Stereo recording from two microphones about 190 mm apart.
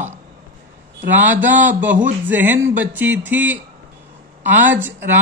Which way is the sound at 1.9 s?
40° right (ahead or behind).